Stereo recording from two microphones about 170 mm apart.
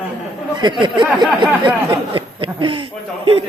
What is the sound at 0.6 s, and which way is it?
A man's voice, 25° right (ahead or behind).